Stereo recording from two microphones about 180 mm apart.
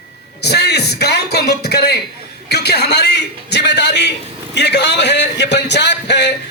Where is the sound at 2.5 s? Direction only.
65° left (ahead or behind).